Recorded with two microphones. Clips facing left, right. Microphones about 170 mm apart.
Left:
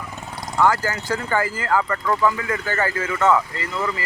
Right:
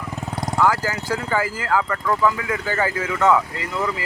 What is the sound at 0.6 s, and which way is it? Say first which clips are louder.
Speech: left 1 dB; 5° right (ahead or behind).